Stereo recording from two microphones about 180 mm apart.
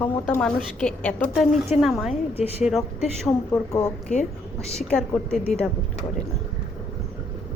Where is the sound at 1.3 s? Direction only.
5° right (ahead or behind).